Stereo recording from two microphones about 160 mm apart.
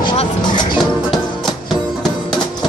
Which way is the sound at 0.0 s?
30° left (ahead or behind).